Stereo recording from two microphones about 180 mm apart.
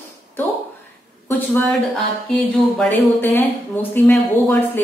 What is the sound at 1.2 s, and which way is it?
A woman's voice, 10° left (ahead or behind).